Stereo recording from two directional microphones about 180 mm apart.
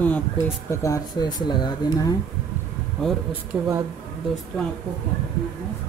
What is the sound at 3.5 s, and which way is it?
Speech, 5° right (ahead or behind).